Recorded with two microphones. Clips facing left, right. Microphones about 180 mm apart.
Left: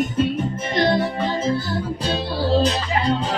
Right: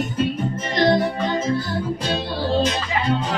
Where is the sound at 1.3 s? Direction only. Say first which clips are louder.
Even; 30° left (ahead or behind).